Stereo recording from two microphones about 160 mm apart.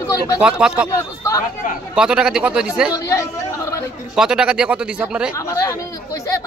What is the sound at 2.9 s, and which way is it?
Speech, 20° left (ahead or behind).